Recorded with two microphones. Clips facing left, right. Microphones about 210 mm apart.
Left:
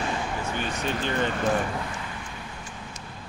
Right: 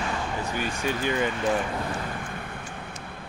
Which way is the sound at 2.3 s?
55° right (ahead or behind).